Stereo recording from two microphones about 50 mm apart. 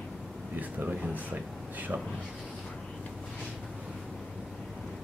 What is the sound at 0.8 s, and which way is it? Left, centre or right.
Speech, right.